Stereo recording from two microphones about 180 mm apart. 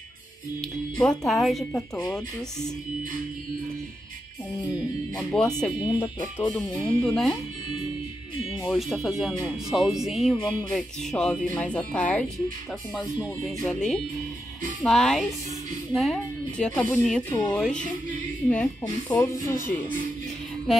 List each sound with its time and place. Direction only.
0.6 s speech: 5° left (ahead or behind)
1.7 s speech: 10° left (ahead or behind)
5.3 s speech: 5° left (ahead or behind)
5.9 s speech: 20° left (ahead or behind)
6.5 s speech: 5° left (ahead or behind)
8.6 s speech: centre (ahead or behind)